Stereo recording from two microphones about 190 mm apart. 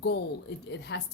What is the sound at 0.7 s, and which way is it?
Speech, 65° left (ahead or behind).